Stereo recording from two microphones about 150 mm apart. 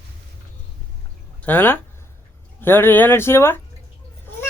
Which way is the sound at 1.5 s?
15° left (ahead or behind).